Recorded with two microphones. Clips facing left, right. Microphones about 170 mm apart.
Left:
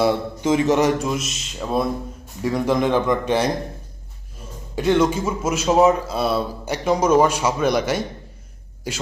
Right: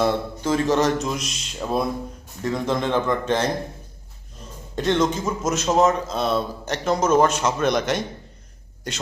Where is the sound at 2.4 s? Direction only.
10° left (ahead or behind).